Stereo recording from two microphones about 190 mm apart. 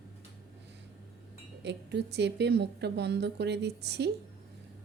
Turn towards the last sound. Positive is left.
turn(degrees=-60)  # may be behind; listen again after turning